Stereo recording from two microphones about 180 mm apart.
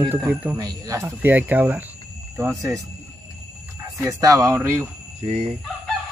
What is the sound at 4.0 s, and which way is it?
Speech, 20° right (ahead or behind).